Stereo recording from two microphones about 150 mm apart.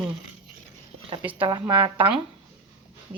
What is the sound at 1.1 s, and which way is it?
Speech, 35° right (ahead or behind).